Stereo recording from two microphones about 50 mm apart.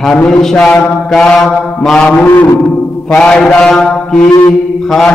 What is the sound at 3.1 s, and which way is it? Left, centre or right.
Mantra, centre.